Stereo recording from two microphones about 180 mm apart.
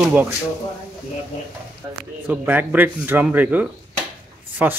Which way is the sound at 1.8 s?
20° right (ahead or behind).